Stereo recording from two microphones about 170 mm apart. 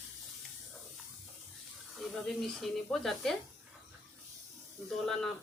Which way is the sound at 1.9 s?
Centre (ahead or behind).